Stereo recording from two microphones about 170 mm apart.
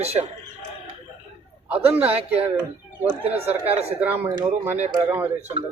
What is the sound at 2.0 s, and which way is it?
Speech, 35° right (ahead or behind).